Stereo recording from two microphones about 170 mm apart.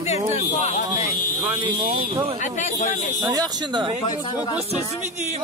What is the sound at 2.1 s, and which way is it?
Speech, 30° right (ahead or behind).